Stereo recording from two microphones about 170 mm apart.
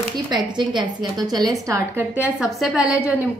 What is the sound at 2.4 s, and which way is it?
Speech, centre (ahead or behind).